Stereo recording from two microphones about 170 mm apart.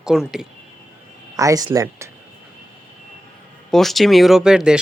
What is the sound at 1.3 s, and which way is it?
Speech, 20° right (ahead or behind).